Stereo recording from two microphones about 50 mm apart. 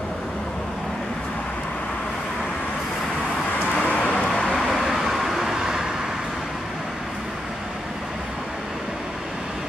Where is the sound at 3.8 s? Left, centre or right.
Left.